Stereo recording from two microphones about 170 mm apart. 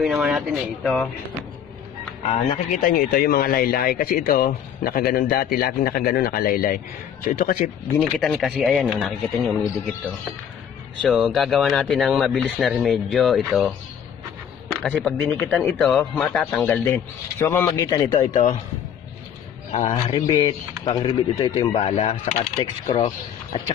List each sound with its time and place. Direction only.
0.0 s speech: 5° right (ahead or behind)
2.2 s speech: 35° left (ahead or behind)
2.8 s speech: 55° left (ahead or behind)
8.0 s speech: centre (ahead or behind)
11.0 s speech: 5° right (ahead or behind)
14.8 s a man's voice: 5° left (ahead or behind); by 18.2 s 20° left (ahead or behind)
18.3 s a man's voice: 50° left (ahead or behind)
19.7 s speech: 35° left (ahead or behind)
22.4 s speech: 30° left (ahead or behind)